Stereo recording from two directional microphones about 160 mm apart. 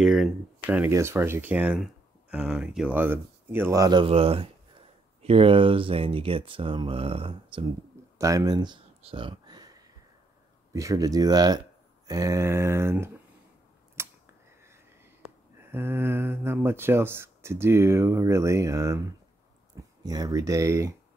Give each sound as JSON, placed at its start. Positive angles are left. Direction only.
{"t": 0.0, "sound": "speech", "side_deg": -5}
{"t": 8.2, "sound": "speech", "side_deg": -20}
{"t": 9.0, "sound": "a sound", "side_deg": -30}
{"t": 10.7, "sound": "speech", "side_deg": -20}
{"t": 13.9, "sound": "a sound", "side_deg": -15}
{"t": 15.7, "sound": "speech", "side_deg": -15}